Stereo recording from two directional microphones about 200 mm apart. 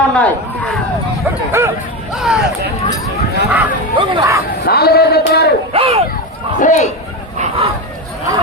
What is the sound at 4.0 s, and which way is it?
Speech, 25° right (ahead or behind).